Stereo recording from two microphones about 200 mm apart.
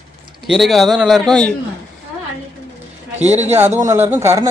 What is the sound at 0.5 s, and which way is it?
A man's voice, centre (ahead or behind).